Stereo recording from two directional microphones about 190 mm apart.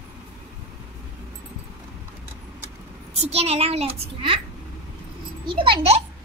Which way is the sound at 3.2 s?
35° right (ahead or behind).